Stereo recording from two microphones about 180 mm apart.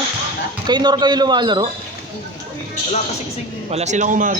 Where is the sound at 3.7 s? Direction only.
40° right (ahead or behind).